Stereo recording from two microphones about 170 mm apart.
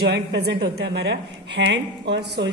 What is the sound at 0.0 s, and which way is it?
A man's voice, 80° right.